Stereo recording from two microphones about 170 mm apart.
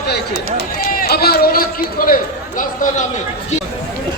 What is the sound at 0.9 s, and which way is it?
Run, 60° left (ahead or behind).